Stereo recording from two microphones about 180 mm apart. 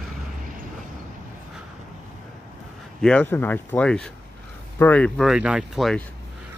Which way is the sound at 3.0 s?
5° left (ahead or behind).